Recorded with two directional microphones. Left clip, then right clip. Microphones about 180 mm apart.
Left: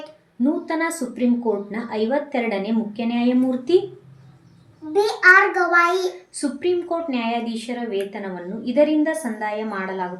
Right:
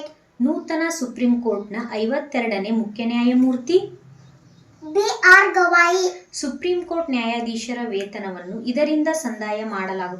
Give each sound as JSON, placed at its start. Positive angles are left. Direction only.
{"t": 0.6, "sound": "a woman's voice", "side_deg": 30}
{"t": 4.9, "sound": "a child's voice", "side_deg": 5}
{"t": 6.3, "sound": "a woman's voice", "side_deg": 30}